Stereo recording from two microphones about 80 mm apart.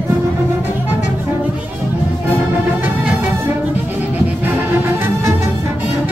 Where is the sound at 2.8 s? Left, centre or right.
Right.